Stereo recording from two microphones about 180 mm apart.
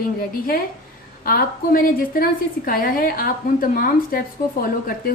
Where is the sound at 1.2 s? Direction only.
55° left (ahead or behind).